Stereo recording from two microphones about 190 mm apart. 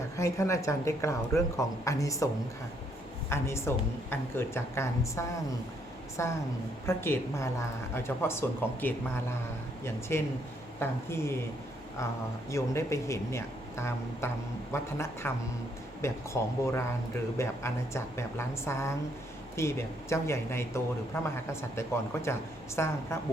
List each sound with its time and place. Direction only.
0.2 s speech: 15° left (ahead or behind)
12.5 s speech: 15° left (ahead or behind)